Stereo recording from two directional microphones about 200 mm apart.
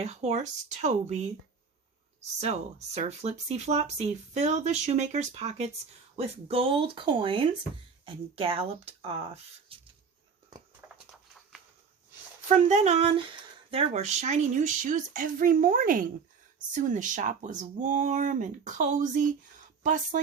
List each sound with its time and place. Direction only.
0.0 s speech: 35° right (ahead or behind)
2.4 s speech: 35° right (ahead or behind)
10.8 s a sound: 5° right (ahead or behind)
12.5 s speech: 35° right (ahead or behind)